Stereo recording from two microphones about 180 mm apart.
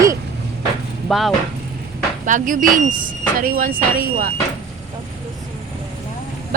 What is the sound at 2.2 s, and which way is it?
Speech, 45° right (ahead or behind).